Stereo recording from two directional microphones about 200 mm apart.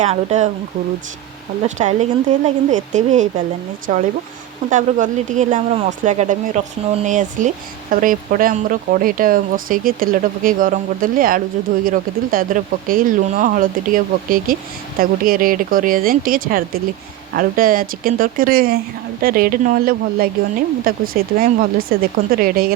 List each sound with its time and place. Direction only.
0.0 s speech: 35° right (ahead or behind)
1.6 s speech: 35° right (ahead or behind)